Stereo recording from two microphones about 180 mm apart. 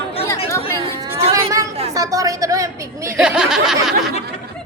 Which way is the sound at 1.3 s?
15° right (ahead or behind).